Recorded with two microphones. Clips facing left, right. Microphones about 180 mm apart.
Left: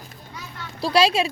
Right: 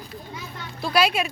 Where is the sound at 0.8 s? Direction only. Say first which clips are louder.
Left 3 dB; 30° left (ahead or behind).